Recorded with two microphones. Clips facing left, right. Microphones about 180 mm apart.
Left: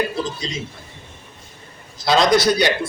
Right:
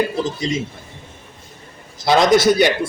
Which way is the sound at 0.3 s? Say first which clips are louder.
Right 7 dB; 20° right (ahead or behind).